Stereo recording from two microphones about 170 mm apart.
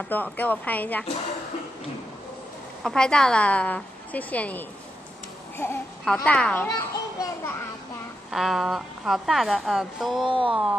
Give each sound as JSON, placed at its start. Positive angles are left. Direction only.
{"t": 0.1, "sound": "a woman's voice", "side_deg": 10}
{"t": 2.8, "sound": "a woman's voice", "side_deg": 5}
{"t": 6.7, "sound": "children playing", "side_deg": 15}
{"t": 8.3, "sound": "a woman's voice", "side_deg": 0}
{"t": 10.2, "sound": "speech", "side_deg": -30}
{"t": 10.5, "sound": "music", "side_deg": -5}